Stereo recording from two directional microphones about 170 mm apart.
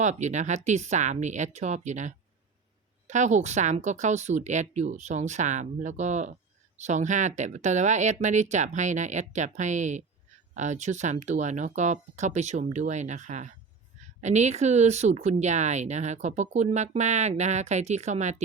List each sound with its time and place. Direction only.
0.0 s a woman's voice: 45° right (ahead or behind)